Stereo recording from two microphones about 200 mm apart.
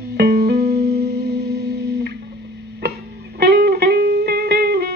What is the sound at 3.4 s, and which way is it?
Music, 55° right (ahead or behind).